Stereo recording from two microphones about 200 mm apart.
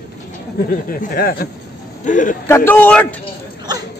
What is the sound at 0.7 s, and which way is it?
Speech, 45° left (ahead or behind).